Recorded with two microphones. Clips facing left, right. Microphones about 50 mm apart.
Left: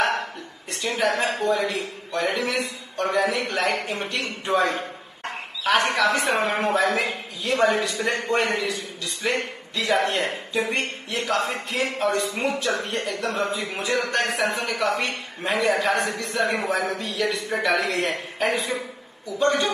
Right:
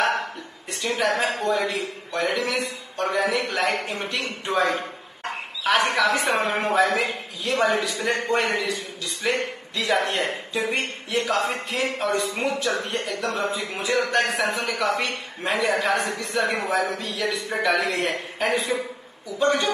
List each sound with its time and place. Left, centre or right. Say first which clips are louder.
0.7 s speech: even; centre